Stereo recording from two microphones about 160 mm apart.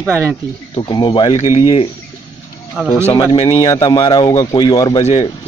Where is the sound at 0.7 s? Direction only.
30° left (ahead or behind).